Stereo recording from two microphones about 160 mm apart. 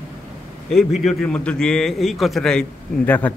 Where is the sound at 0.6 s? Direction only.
Centre (ahead or behind).